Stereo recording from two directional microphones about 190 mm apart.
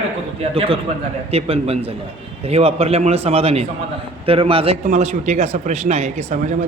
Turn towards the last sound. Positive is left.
turn(degrees=-35)  # may be behind; listen again after turning